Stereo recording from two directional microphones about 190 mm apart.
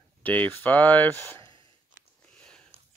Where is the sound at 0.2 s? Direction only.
10° left (ahead or behind).